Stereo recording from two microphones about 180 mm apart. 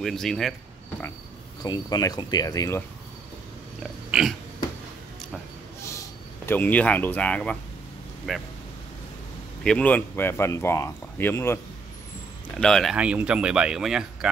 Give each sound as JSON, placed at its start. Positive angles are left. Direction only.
{"t": 0.0, "sound": "speech", "side_deg": 0}
{"t": 1.6, "sound": "speech", "side_deg": 20}
{"t": 4.1, "sound": "a sound", "side_deg": 0}
{"t": 6.4, "sound": "speech", "side_deg": 10}
{"t": 9.6, "sound": "speech", "side_deg": 5}